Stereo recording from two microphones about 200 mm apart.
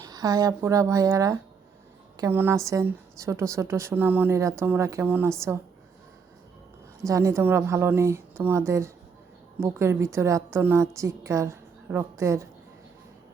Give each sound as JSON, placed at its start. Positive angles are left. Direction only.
{"t": 0.0, "sound": "a woman's voice", "side_deg": -20}
{"t": 7.0, "sound": "a woman's voice", "side_deg": -15}